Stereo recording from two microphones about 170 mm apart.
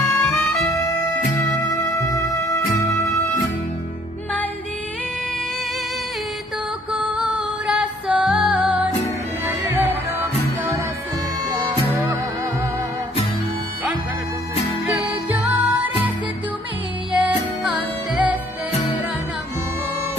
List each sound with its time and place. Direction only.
0.0 s music: 15° left (ahead or behind)
2.0 s music: 20° left (ahead or behind)
6.9 s music: 5° right (ahead or behind)
14.9 s music: 10° right (ahead or behind)
17.1 s music: 10° right (ahead or behind)